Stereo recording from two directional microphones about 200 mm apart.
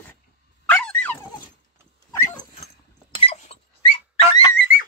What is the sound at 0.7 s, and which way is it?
Dog, 5° left (ahead or behind).